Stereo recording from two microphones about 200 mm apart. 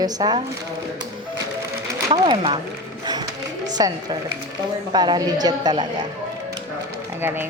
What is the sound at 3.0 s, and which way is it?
Music, 20° right (ahead or behind).